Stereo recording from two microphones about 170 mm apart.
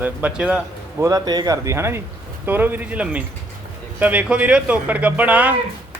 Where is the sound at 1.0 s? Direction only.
20° right (ahead or behind).